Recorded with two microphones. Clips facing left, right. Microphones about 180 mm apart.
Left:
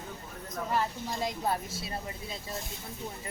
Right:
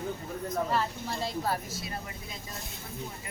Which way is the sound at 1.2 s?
20° left (ahead or behind).